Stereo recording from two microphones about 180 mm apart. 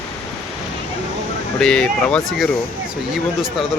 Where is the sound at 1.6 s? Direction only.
5° left (ahead or behind).